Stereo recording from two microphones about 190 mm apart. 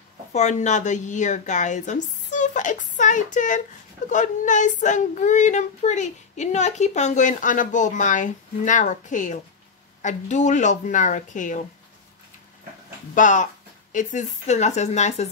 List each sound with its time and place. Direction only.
0.3 s speech: 35° left (ahead or behind)
13.1 s speech: 40° left (ahead or behind)